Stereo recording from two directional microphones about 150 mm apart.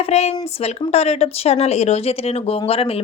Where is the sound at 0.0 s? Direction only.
45° left (ahead or behind).